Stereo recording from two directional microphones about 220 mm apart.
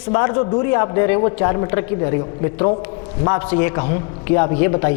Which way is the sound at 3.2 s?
20° left (ahead or behind).